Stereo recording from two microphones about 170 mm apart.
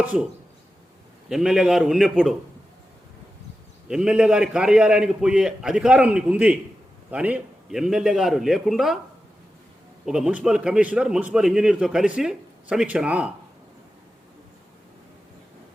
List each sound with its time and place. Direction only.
0.0 s speech: 10° right (ahead or behind)
1.3 s a man's voice: 5° right (ahead or behind)
3.8 s a man's voice: 5° right (ahead or behind)
10.1 s a man's voice: 5° right (ahead or behind)